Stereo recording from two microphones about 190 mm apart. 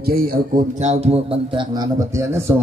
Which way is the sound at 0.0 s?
50° right (ahead or behind).